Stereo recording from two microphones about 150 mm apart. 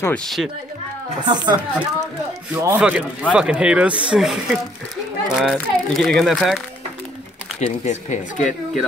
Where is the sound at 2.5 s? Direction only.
20° right (ahead or behind).